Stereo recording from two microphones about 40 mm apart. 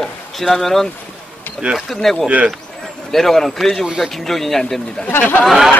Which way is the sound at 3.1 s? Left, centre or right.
Centre.